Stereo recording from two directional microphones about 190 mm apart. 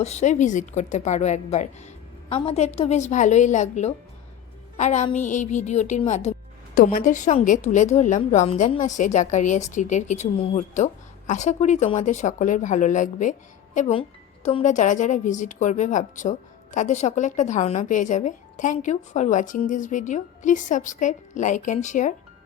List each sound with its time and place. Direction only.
0.0 s a woman's voice: 35° left (ahead or behind)